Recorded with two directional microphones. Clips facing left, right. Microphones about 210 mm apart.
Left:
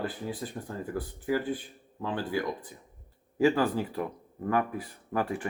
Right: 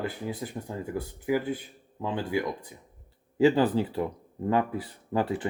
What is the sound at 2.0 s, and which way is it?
Speech, 20° right (ahead or behind).